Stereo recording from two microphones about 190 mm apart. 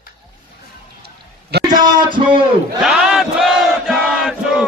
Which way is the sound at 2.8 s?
5° right (ahead or behind).